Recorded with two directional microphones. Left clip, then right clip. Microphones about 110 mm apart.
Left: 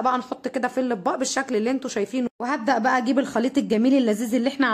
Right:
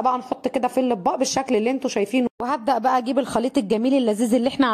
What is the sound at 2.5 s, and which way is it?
Speech, 65° right (ahead or behind).